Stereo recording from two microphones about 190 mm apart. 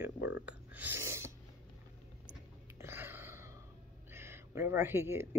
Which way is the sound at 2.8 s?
10° right (ahead or behind).